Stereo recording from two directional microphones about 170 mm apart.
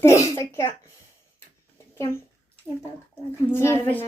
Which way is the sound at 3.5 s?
15° left (ahead or behind).